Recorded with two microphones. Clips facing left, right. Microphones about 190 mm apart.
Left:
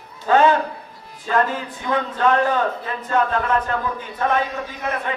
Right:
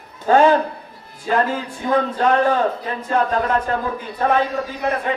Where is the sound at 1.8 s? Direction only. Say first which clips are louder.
Right 4 dB; 35° right (ahead or behind).